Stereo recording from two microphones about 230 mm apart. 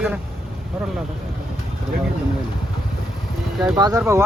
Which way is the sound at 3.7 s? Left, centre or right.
Centre.